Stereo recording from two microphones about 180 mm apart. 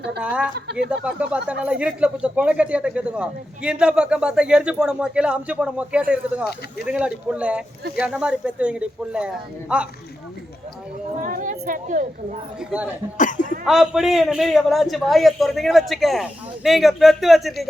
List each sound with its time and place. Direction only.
0.2 s speech: 5° right (ahead or behind)
11.2 s speech: 45° right (ahead or behind)
12.5 s speech: 5° right (ahead or behind)
13.1 s speech: 45° left (ahead or behind)
13.7 s speech: centre (ahead or behind)